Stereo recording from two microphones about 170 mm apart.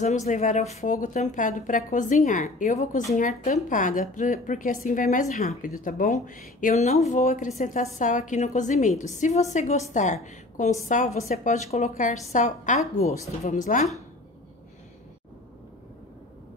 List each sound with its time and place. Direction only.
0.0 s a woman's voice: 45° left (ahead or behind)